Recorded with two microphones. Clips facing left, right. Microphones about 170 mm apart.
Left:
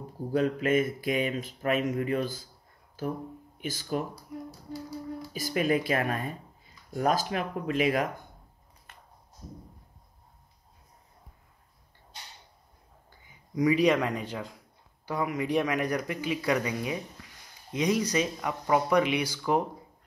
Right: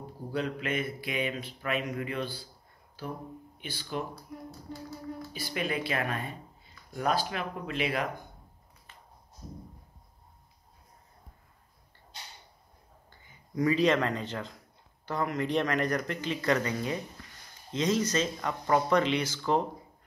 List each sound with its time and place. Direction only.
0.3 s speech: 45° left (ahead or behind)
3.6 s speech: 45° left (ahead or behind)
5.3 s speech: 45° left (ahead or behind)
13.6 s speech: 15° left (ahead or behind)